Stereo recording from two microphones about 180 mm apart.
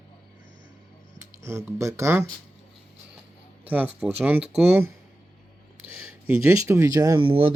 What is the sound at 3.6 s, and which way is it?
Speech, 10° right (ahead or behind).